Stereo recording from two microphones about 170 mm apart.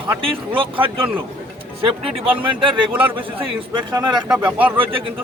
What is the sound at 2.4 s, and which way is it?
A man's voice, 30° right (ahead or behind).